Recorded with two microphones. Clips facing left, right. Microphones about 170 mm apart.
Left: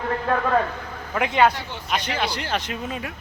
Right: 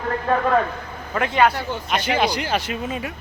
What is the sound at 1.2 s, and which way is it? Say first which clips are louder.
Speech: right 1 dB; 20° left (ahead or behind).